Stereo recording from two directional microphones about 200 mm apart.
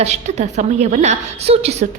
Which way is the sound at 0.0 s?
35° right (ahead or behind).